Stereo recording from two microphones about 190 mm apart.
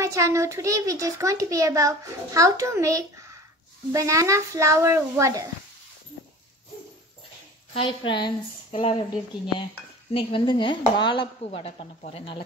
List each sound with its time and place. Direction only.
0.0 s a child's voice: 15° right (ahead or behind)
7.7 s speech: 25° left (ahead or behind)